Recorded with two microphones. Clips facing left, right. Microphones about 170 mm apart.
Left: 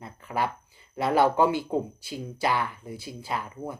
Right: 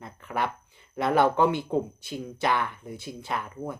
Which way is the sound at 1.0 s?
5° left (ahead or behind).